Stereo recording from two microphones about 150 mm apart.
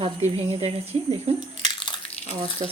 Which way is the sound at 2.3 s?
40° right (ahead or behind).